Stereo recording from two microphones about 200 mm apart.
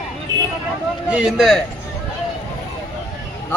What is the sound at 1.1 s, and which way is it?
Speech, 5° right (ahead or behind).